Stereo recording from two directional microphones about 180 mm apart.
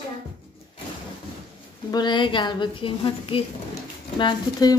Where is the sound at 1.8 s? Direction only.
25° left (ahead or behind).